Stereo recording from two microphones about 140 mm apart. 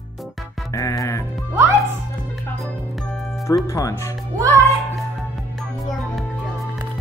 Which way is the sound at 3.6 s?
20° left (ahead or behind).